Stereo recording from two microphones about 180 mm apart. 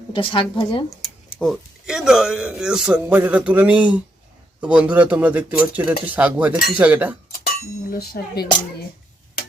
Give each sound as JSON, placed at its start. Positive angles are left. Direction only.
{"t": 0.1, "sound": "a woman's voice", "side_deg": 30}
{"t": 1.0, "sound": "speech", "side_deg": 0}
{"t": 7.3, "sound": "speech", "side_deg": 55}